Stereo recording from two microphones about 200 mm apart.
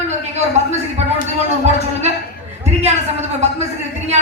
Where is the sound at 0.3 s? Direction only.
35° right (ahead or behind).